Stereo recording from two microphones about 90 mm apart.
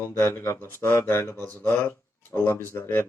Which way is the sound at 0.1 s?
30° left (ahead or behind).